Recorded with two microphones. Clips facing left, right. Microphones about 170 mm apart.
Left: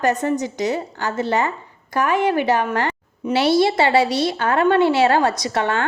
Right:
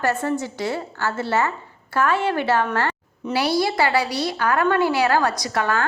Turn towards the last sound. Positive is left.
turn(degrees=25)  # may be behind; listen again after turning